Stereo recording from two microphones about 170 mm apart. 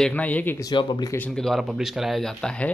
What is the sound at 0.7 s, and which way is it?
Speech, 25° left (ahead or behind).